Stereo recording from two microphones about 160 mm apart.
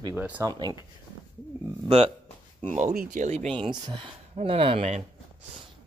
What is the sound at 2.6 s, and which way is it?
Speech, 50° right (ahead or behind).